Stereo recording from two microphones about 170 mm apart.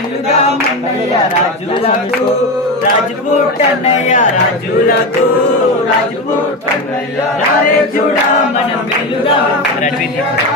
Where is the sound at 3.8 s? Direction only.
40° left (ahead or behind).